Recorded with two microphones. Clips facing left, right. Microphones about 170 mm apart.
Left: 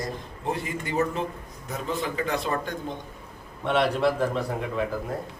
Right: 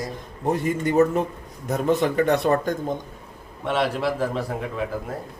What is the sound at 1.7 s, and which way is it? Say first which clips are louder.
Speech: right 9 dB; 70° right (ahead or behind).